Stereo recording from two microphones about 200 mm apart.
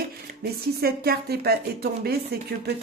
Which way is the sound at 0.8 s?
50° right (ahead or behind).